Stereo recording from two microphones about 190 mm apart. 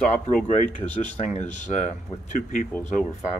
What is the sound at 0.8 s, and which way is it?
Speech, 10° left (ahead or behind).